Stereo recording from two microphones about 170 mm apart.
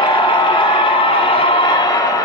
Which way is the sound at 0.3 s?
30° left (ahead or behind).